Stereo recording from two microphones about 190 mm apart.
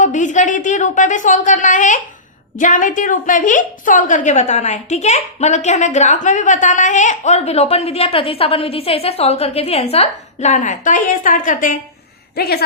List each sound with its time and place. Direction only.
0.0 s a woman's voice: 40° left (ahead or behind)
12.4 s a man's voice: 55° left (ahead or behind)